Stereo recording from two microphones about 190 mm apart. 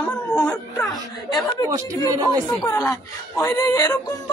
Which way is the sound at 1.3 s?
20° left (ahead or behind).